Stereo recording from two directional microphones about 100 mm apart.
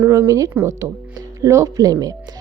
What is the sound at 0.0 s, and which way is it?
Speech, 25° right (ahead or behind).